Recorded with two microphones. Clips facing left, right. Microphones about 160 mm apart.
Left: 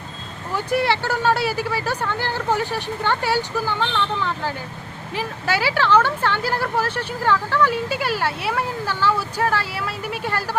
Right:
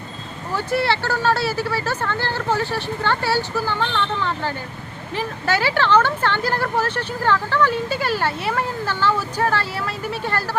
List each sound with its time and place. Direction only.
0.5 s speech: 15° left (ahead or behind)